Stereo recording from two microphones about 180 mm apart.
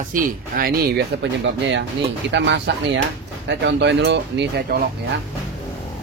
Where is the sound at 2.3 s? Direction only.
75° right (ahead or behind).